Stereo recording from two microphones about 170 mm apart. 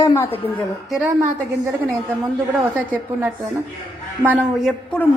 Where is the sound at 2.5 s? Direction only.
10° right (ahead or behind).